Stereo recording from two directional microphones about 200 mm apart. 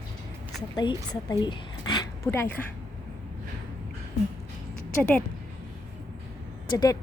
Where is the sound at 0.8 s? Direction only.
25° left (ahead or behind).